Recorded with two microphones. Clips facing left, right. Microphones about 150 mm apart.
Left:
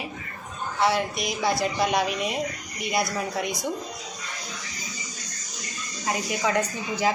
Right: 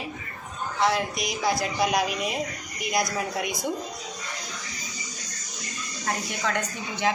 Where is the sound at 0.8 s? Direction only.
Centre (ahead or behind).